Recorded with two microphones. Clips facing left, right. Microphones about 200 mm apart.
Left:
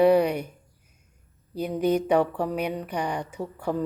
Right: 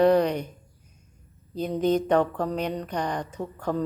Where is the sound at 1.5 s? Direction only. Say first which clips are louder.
Even; 10° left (ahead or behind).